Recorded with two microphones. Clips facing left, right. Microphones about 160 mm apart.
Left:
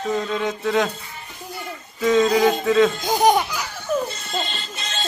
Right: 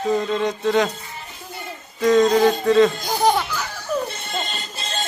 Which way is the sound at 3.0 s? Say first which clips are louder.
Left 2 dB; 20° left (ahead or behind).